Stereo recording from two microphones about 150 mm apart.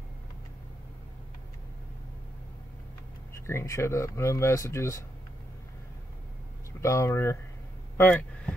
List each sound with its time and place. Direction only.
3.3 s speech: 20° left (ahead or behind)
6.8 s speech: 20° left (ahead or behind)